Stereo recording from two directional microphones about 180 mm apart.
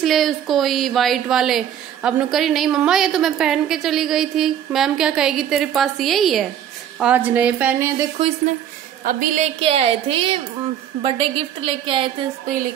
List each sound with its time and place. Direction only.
0.0 s a woman's voice: centre (ahead or behind)
9.0 s a woman's voice: 50° right (ahead or behind)
9.6 s a woman's voice: 35° right (ahead or behind)